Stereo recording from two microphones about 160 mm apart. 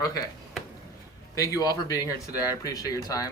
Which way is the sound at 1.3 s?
20° left (ahead or behind).